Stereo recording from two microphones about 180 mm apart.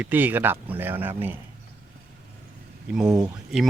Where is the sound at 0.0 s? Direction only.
10° right (ahead or behind).